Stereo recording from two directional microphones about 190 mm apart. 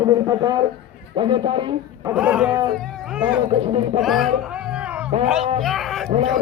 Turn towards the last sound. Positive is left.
turn(degrees=0)  # may be behind; listen again after turning